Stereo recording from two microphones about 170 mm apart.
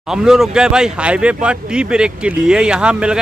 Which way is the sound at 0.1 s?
5° right (ahead or behind).